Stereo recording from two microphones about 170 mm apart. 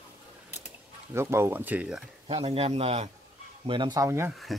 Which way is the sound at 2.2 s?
35° right (ahead or behind).